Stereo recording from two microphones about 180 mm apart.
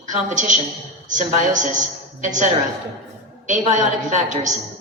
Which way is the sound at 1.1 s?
45° right (ahead or behind).